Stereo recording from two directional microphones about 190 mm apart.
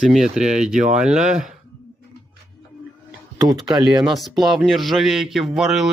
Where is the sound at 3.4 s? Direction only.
20° right (ahead or behind).